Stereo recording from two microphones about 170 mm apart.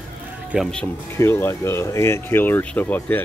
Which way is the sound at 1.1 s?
15° left (ahead or behind).